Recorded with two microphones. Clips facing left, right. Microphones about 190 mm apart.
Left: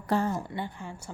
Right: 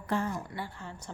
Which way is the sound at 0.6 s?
15° left (ahead or behind).